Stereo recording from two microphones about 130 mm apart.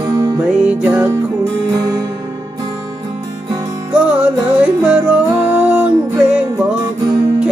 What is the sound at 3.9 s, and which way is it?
Music, 10° right (ahead or behind).